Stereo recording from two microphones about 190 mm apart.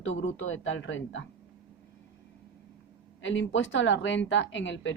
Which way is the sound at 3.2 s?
85° left.